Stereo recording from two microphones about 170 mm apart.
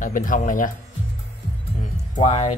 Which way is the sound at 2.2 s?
40° left (ahead or behind).